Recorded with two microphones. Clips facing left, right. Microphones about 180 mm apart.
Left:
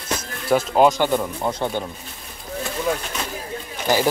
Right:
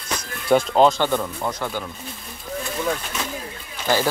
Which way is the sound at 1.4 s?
25° left (ahead or behind).